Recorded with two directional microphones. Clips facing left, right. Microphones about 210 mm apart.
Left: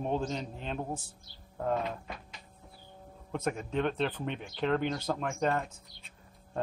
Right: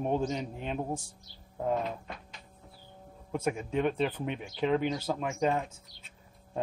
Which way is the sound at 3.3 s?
10° right (ahead or behind).